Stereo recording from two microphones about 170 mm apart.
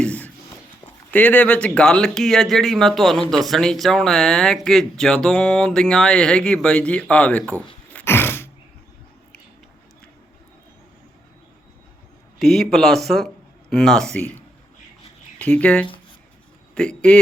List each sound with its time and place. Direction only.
0.0 s a sound: 10° left (ahead or behind)
1.1 s speech: 10° left (ahead or behind)
12.4 s a man's voice: centre (ahead or behind)